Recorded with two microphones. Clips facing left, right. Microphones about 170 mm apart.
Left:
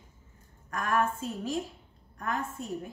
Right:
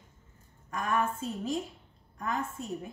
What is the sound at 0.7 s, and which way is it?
Speech, centre (ahead or behind).